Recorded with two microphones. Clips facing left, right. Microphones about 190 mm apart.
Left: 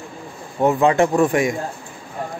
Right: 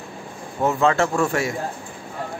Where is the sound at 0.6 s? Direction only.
15° left (ahead or behind).